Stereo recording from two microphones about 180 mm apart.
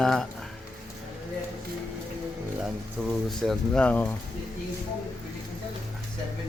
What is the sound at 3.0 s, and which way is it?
A man's voice, 5° left (ahead or behind).